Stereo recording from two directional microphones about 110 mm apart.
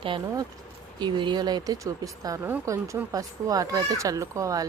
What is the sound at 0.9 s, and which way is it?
Speech, 45° right (ahead or behind).